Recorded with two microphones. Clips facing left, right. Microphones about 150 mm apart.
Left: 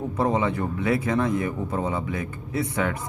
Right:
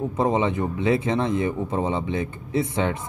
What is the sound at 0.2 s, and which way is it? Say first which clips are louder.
Speech: right 1 dB; 20° right (ahead or behind).